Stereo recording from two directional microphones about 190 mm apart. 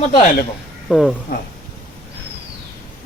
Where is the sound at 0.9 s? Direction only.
Centre (ahead or behind).